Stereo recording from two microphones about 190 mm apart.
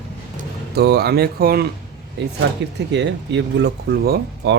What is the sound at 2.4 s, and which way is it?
Speech, 65° right (ahead or behind).